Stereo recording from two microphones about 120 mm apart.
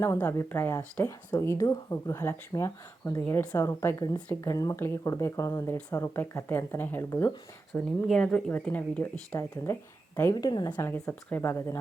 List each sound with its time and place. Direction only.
0.0 s speech: 20° left (ahead or behind)
3.2 s speech: 15° left (ahead or behind)
7.7 s speech: 5° left (ahead or behind); by 9.8 s 20° left (ahead or behind)
10.3 s speech: 35° left (ahead or behind)
11.1 s speech: 15° left (ahead or behind)